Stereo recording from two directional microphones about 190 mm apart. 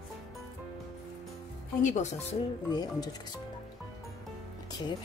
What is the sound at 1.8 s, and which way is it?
Speech, 40° left (ahead or behind).